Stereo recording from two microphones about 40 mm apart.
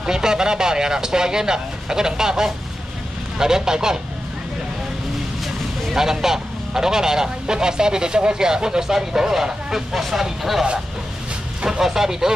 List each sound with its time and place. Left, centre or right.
0.0 s speech: centre
5.4 s vehicle: centre
6.0 s speech: centre
11.8 s speech: centre